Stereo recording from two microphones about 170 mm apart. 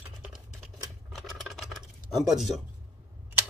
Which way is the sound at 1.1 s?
Centre (ahead or behind).